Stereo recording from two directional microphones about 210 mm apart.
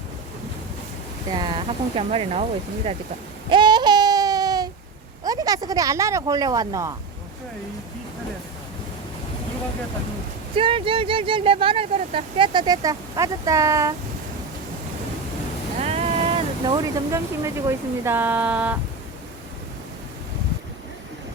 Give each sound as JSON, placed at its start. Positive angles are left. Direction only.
{"t": 1.4, "sound": "speech", "side_deg": -25}
{"t": 3.5, "sound": "a sound", "side_deg": -20}
{"t": 5.2, "sound": "speech", "side_deg": -15}
{"t": 10.5, "sound": "speech", "side_deg": -25}
{"t": 15.8, "sound": "speech", "side_deg": -30}